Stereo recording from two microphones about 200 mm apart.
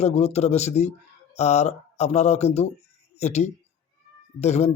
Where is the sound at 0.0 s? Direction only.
30° left (ahead or behind).